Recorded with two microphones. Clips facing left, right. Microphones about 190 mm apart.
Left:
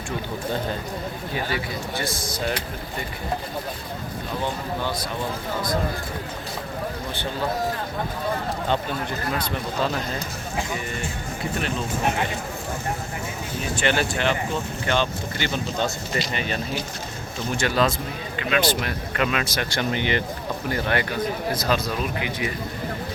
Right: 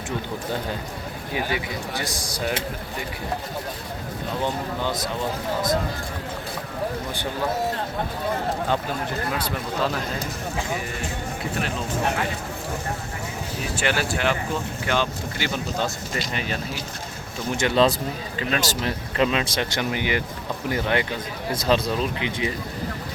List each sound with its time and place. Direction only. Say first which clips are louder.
1.3 s speech: right 2 dB; 15° right (ahead or behind)
13.7 s speech: left 1 dB; 5° right (ahead or behind)
17.5 s speech: right 3 dB; 20° right (ahead or behind)
19.8 s speech: left 3 dB; 10° right (ahead or behind); by 22.5 s 25° right (ahead or behind)